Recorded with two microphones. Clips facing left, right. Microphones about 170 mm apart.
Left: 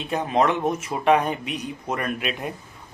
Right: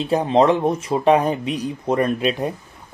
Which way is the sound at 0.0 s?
30° right (ahead or behind).